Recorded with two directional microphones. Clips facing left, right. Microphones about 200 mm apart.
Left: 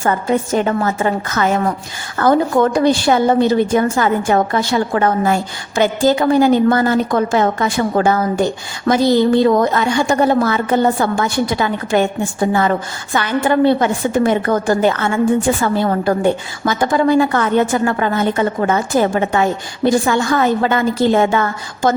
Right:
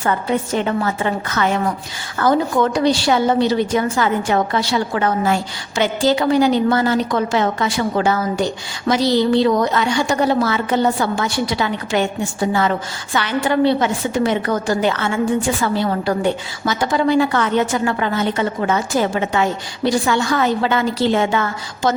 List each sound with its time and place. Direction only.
0.0 s a woman's voice: 45° left (ahead or behind)